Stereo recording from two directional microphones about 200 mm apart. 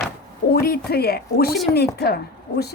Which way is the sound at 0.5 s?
50° left (ahead or behind).